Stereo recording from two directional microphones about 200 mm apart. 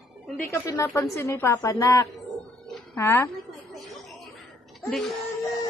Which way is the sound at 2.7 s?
10° left (ahead or behind).